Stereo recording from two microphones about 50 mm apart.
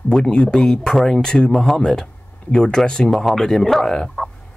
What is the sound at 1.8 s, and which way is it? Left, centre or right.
Speech, centre.